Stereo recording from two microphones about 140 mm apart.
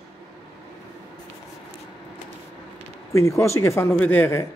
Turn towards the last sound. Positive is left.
turn(degrees=15)  # may be behind; listen again after turning